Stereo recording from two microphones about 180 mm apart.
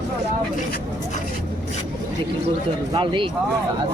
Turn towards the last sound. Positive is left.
turn(degrees=-30)  # may be behind; listen again after turning